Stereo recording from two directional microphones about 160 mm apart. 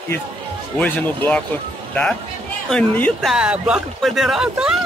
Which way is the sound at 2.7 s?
10° left (ahead or behind).